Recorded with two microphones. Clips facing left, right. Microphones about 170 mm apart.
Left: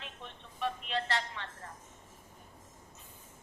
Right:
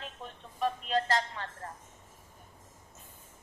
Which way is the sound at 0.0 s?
40° right (ahead or behind).